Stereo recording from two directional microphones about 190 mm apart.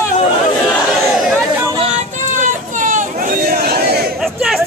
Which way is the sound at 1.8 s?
40° right (ahead or behind).